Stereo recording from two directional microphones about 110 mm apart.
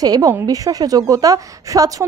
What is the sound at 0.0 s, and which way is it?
Speech, 35° right (ahead or behind).